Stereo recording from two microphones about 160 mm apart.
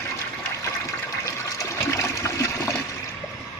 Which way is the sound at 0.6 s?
20° left (ahead or behind).